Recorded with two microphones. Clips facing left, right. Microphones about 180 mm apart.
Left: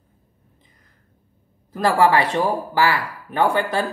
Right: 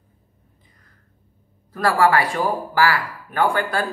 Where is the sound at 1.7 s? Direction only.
20° left (ahead or behind).